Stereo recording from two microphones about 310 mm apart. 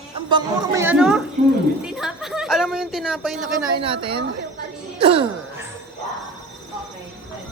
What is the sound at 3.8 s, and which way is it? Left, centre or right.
Speech, centre.